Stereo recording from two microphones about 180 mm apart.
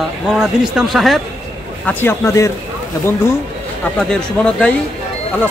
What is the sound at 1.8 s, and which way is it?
Speech, 15° left (ahead or behind).